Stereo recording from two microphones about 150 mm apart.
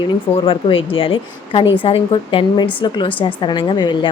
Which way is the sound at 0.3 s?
35° left (ahead or behind).